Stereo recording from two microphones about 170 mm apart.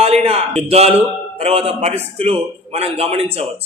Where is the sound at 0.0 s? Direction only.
35° right (ahead or behind).